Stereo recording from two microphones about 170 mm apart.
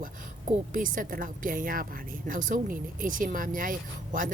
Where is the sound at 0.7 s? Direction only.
55° right (ahead or behind).